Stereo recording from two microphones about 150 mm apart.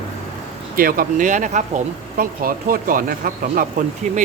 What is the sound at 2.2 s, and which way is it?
Speech, 70° right (ahead or behind).